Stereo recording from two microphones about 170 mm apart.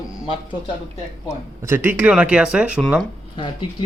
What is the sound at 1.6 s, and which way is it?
Speech, 10° right (ahead or behind).